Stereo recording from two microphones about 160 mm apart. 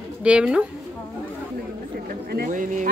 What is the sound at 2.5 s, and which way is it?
Speech, 55° right (ahead or behind).